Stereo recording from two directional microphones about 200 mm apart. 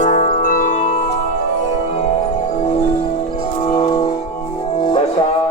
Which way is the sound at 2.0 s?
35° left (ahead or behind).